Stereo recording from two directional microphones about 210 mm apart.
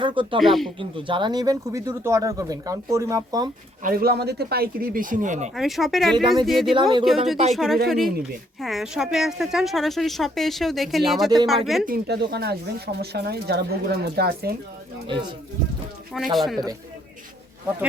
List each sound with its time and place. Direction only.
0.0 s speech: 25° right (ahead or behind)
0.3 s a woman's voice: centre (ahead or behind)
0.8 s speech: 25° right (ahead or behind)
3.8 s speech: 45° right (ahead or behind)
5.5 s a woman's voice: centre (ahead or behind)
11.9 s speech: 50° right (ahead or behind)
16.1 s a woman's voice: centre (ahead or behind)